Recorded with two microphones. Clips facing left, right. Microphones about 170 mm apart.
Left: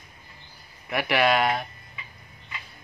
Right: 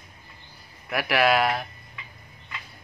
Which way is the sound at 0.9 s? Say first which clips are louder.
Right 1 dB; centre (ahead or behind).